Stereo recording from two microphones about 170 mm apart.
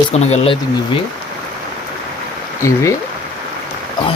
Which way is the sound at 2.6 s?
20° left (ahead or behind).